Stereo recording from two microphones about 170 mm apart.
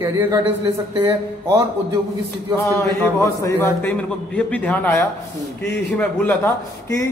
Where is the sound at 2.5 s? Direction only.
15° left (ahead or behind).